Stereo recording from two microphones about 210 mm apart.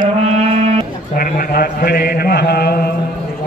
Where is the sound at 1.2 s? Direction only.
45° left (ahead or behind).